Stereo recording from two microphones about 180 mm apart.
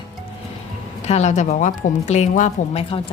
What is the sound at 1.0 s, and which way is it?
A woman's voice, 40° left (ahead or behind).